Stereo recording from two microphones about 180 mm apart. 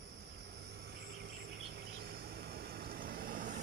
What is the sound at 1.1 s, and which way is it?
Insect, 60° right (ahead or behind).